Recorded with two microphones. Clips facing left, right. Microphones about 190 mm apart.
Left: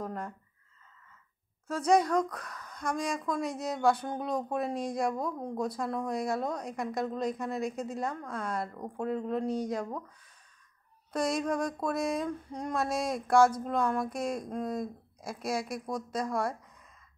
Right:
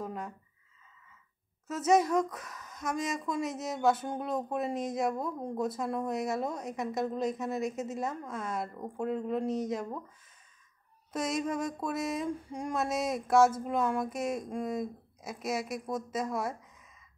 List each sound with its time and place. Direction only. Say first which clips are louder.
0.0 s a sound: left 1 dB; 5° right (ahead or behind)
1.7 s a woman's voice: even; 5° right (ahead or behind)
11.1 s a woman's voice: left 2 dB; 5° right (ahead or behind)